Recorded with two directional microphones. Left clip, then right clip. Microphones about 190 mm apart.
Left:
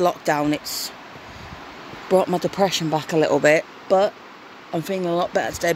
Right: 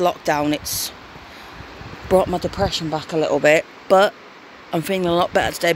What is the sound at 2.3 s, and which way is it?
Speech, 10° left (ahead or behind).